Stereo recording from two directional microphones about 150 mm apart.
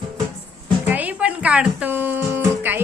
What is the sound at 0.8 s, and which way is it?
Music, 10° right (ahead or behind).